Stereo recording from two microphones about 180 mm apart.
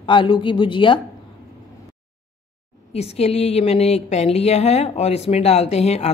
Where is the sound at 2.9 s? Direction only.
35° left (ahead or behind).